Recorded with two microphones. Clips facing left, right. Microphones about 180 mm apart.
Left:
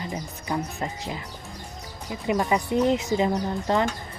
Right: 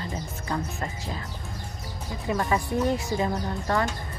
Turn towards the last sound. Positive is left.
turn(degrees=20)  # may be behind; listen again after turning